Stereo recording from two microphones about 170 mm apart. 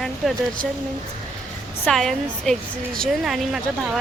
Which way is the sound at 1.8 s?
Centre (ahead or behind).